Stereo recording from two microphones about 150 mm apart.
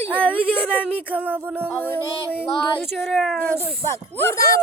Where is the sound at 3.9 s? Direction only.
15° left (ahead or behind).